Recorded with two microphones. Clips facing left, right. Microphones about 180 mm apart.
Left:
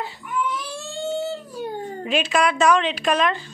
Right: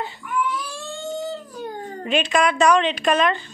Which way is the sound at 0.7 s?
25° left (ahead or behind).